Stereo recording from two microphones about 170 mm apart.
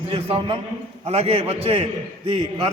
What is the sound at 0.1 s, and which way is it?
A man's voice, 35° right (ahead or behind).